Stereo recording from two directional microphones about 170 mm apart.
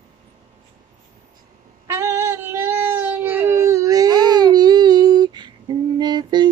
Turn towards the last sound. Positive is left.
turn(degrees=-25)  # may be behind; listen again after turning